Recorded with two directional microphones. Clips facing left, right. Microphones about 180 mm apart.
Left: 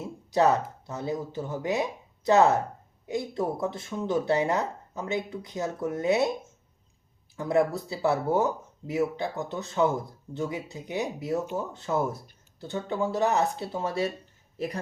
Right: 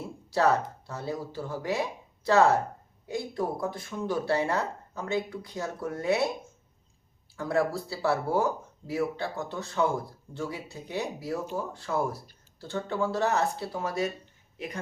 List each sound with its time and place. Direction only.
0.0 s a sound: 20° left (ahead or behind)
0.9 s speech: 20° left (ahead or behind)
7.3 s speech: 20° left (ahead or behind)
14.6 s speech: 40° left (ahead or behind)